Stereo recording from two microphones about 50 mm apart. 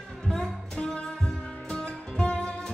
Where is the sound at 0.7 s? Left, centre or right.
Centre.